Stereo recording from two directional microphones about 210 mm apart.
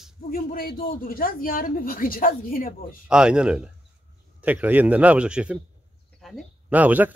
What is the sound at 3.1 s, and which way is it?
A man's voice, 5° right (ahead or behind).